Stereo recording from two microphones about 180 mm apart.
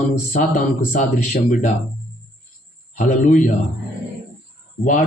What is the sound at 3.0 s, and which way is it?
Speech, 45° left (ahead or behind).